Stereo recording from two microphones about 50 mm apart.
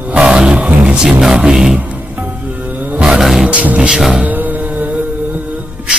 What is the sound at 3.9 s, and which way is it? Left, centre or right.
Music, centre.